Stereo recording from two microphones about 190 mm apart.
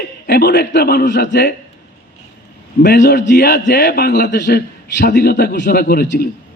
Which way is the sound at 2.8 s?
55° left (ahead or behind).